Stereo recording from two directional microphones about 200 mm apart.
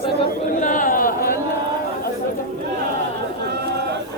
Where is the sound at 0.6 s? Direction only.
40° left (ahead or behind).